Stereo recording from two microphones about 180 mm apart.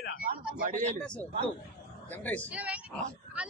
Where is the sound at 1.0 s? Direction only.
5° left (ahead or behind).